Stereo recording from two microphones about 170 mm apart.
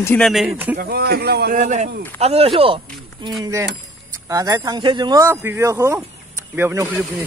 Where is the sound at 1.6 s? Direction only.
40° right (ahead or behind).